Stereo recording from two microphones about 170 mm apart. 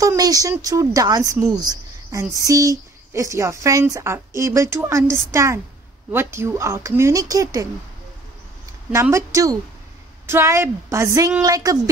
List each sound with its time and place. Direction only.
0.0 s a woman's voice: 20° right (ahead or behind)
8.9 s a woman's voice: 15° right (ahead or behind)